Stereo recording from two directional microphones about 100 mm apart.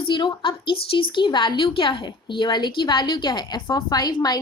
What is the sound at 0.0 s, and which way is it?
A woman's voice, 50° left (ahead or behind).